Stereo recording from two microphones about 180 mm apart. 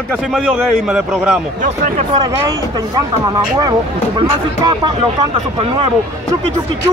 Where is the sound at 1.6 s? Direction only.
45° right (ahead or behind).